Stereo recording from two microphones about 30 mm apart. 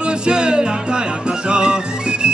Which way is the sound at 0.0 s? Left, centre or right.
Right.